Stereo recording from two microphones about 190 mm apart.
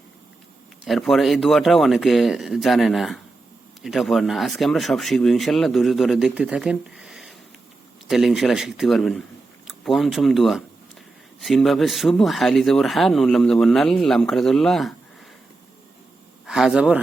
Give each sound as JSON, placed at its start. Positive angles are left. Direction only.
{"t": 0.9, "sound": "speech", "side_deg": 0}
{"t": 16.5, "sound": "speech", "side_deg": -5}